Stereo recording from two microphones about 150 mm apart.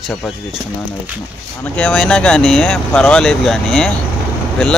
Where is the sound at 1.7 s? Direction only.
10° left (ahead or behind).